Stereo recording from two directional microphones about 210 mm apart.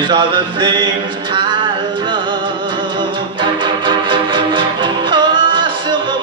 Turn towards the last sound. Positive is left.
turn(degrees=-20)  # may be behind; listen again after turning